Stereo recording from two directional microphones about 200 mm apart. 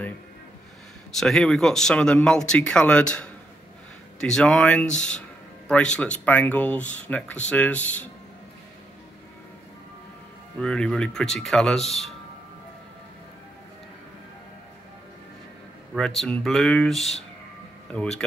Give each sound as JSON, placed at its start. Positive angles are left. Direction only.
{"t": 1.1, "sound": "speech", "side_deg": 0}
{"t": 10.6, "sound": "speech", "side_deg": 5}
{"t": 16.2, "sound": "speech", "side_deg": 0}